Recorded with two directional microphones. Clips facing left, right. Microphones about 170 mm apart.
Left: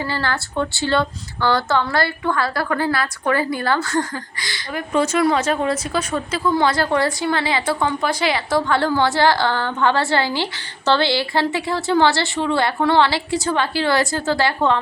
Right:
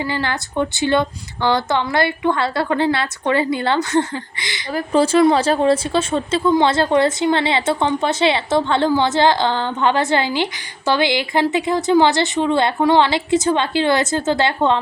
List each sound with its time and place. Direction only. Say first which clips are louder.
0.0 s speech: right 1 dB; 20° right (ahead or behind)
4.7 s speech: right 4 dB; 30° right (ahead or behind)